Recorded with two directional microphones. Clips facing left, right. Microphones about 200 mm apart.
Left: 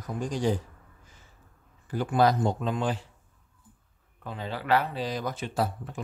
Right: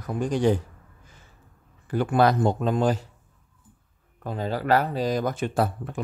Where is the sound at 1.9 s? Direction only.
65° right (ahead or behind); by 3.1 s 40° right (ahead or behind).